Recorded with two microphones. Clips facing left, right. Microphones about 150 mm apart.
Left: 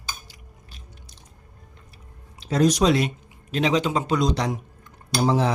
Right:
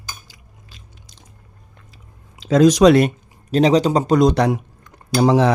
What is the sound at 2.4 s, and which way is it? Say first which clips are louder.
Speech: right 8 dB; 90° right.